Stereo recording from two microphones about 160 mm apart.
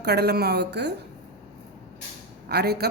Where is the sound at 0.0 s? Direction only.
90° right.